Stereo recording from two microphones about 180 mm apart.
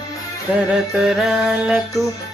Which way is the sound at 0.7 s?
Centre (ahead or behind).